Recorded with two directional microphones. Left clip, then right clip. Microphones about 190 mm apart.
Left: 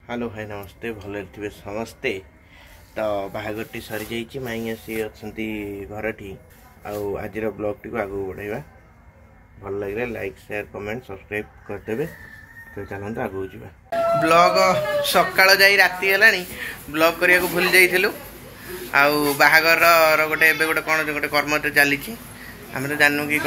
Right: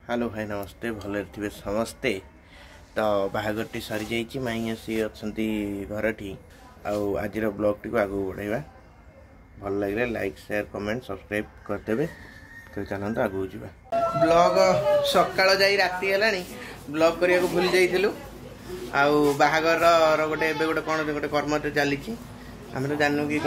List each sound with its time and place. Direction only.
0.1 s speech: 20° right (ahead or behind)
6.8 s speech: 15° right (ahead or behind)
9.7 s speech: 15° right (ahead or behind)
14.2 s a man's voice: centre (ahead or behind)